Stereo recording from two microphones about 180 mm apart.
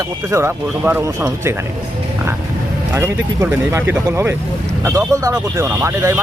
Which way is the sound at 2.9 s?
15° right (ahead or behind).